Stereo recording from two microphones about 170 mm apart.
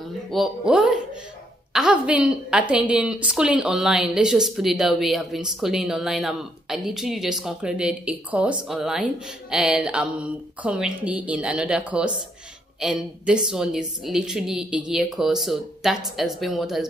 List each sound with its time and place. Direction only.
0.3 s a woman's voice: 5° right (ahead or behind)